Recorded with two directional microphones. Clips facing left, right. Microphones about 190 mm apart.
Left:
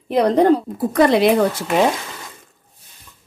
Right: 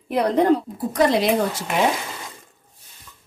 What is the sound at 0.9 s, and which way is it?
Speech, 60° left (ahead or behind).